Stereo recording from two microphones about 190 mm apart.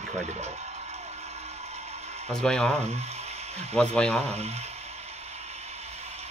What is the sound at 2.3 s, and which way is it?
Speech, 5° left (ahead or behind).